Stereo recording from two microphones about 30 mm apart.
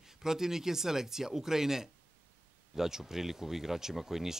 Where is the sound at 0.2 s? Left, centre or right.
Centre.